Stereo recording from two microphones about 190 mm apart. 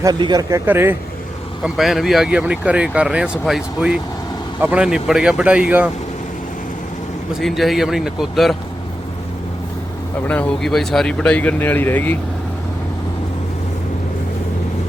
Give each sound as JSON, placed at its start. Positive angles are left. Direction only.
{"t": 0.0, "sound": "speech", "side_deg": -20}
{"t": 7.3, "sound": "speech", "side_deg": 0}
{"t": 10.2, "sound": "speech", "side_deg": 10}